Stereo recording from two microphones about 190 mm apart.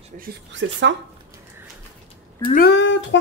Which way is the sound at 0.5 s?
75° right (ahead or behind).